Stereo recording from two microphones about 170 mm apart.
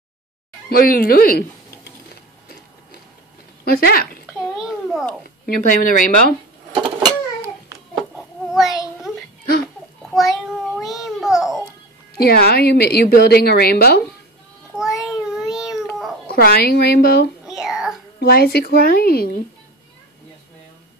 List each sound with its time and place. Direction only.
0.7 s speech: 60° left (ahead or behind)
3.7 s speech: 60° left (ahead or behind)
4.6 s babbling: 5° right (ahead or behind)
5.2 s speech: 55° left (ahead or behind)
6.7 s a sound: 20° right (ahead or behind)
8.5 s child singing: centre (ahead or behind)
10.1 s a sound: centre (ahead or behind)
12.2 s a woman's voice: 65° left (ahead or behind)
14.8 s a sound: 5° right (ahead or behind)
16.3 s speech: 60° left (ahead or behind)
17.5 s a sound: 5° right (ahead or behind)
18.2 s speech: 65° left (ahead or behind)